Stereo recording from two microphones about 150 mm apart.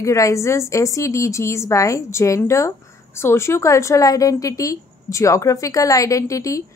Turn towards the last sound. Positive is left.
turn(degrees=20)  # may be behind; listen again after turning